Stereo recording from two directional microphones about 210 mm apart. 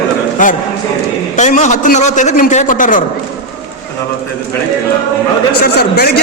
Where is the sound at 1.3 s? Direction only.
35° left (ahead or behind).